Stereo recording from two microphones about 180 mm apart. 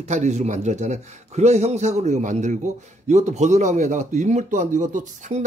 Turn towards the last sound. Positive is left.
turn(degrees=-45)  # may be behind; listen again after turning